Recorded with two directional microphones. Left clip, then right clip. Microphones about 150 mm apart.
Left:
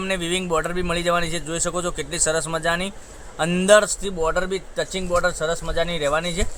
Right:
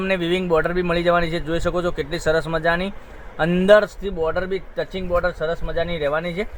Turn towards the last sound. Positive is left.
turn(degrees=-20)  # may be behind; listen again after turning